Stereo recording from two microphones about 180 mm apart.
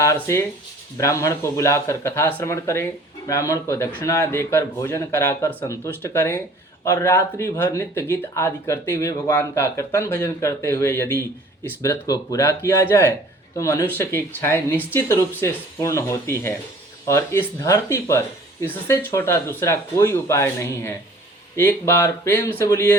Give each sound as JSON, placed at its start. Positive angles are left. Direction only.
{"t": 0.0, "sound": "speech", "side_deg": 15}